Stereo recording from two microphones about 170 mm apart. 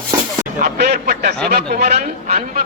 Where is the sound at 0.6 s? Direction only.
70° right (ahead or behind).